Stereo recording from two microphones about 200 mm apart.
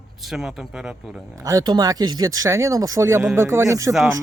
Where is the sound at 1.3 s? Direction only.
15° right (ahead or behind).